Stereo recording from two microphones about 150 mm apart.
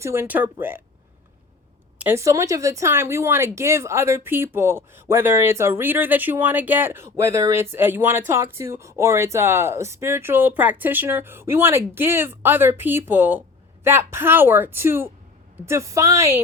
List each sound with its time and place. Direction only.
0.0 s speech: 15° right (ahead or behind)
2.0 s a woman's voice: 15° right (ahead or behind)